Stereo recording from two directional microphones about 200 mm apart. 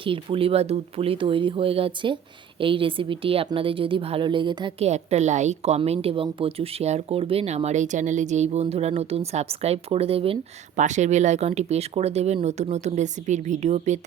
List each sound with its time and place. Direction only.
0.0 s a woman's voice: 25° right (ahead or behind)
4.9 s a woman's voice: 35° right (ahead or behind)